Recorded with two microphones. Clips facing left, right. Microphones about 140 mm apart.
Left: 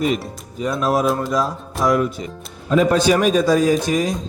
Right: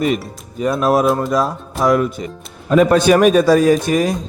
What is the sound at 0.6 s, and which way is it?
Speech, 55° right (ahead or behind).